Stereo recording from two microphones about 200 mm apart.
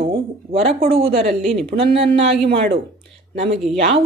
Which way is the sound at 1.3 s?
Centre (ahead or behind).